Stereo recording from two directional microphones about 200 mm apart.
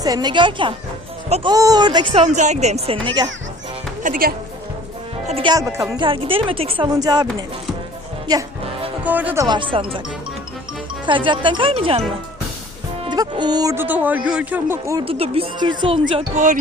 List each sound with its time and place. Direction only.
0.0 s speech: 20° right (ahead or behind)
2.2 s speech: 35° right (ahead or behind)
4.0 s speech: 45° right (ahead or behind)
5.3 s speech: 25° right (ahead or behind)
8.3 s speech: 20° right (ahead or behind)
9.0 s speech: 10° right (ahead or behind); by 10.0 s 25° right (ahead or behind)
11.0 s speech: 25° right (ahead or behind)
13.1 s speech: 20° right (ahead or behind)
15.0 s speech: 25° right (ahead or behind)